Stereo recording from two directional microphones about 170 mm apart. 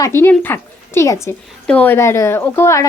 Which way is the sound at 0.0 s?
15° left (ahead or behind).